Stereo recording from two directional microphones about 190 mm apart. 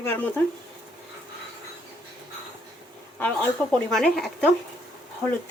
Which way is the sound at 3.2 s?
5° left (ahead or behind).